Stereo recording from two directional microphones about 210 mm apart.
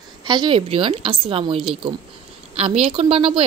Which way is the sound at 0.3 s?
25° right (ahead or behind).